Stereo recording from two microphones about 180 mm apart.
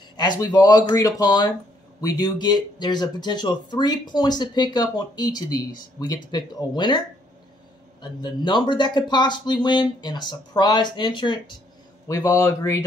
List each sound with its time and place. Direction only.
0.2 s speech: 25° left (ahead or behind)
8.0 s speech: 25° left (ahead or behind)